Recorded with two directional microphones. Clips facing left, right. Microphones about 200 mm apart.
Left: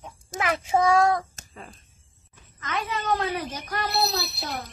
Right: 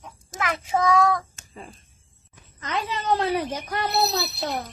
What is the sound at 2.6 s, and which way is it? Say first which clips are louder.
Speech: right 2 dB; 30° right (ahead or behind).